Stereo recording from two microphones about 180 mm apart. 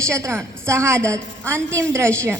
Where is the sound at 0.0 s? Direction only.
15° right (ahead or behind).